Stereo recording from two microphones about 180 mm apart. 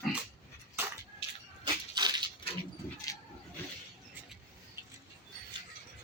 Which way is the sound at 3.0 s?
20° left (ahead or behind).